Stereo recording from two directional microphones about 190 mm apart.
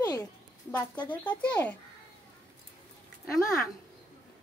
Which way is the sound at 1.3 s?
5° left (ahead or behind).